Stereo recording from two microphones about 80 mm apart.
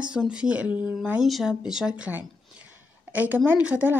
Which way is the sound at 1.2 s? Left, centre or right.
Centre.